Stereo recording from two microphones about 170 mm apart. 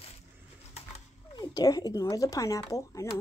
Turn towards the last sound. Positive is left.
turn(degrees=20)  # may be behind; listen again after turning